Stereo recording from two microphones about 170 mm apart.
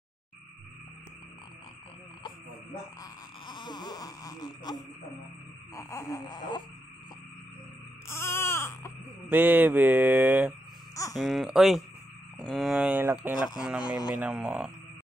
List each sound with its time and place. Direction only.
3.0 s wail: 25° left (ahead or behind)
5.8 s speech: 20° left (ahead or behind)
8.1 s baby cry: 15° left (ahead or behind)
9.3 s mantra: 10° right (ahead or behind)
11.1 s speech: centre (ahead or behind)
13.8 s speech: 25° left (ahead or behind)
14.1 s mantra: 5° right (ahead or behind)